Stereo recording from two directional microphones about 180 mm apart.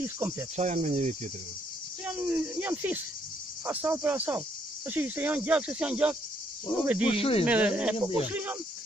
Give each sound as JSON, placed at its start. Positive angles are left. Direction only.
{"t": 0.0, "sound": "speech", "side_deg": -10}
{"t": 0.6, "sound": "cricket", "side_deg": -40}
{"t": 2.0, "sound": "speech", "side_deg": -10}
{"t": 7.1, "sound": "speech", "side_deg": 30}
{"t": 7.4, "sound": "speech", "side_deg": -5}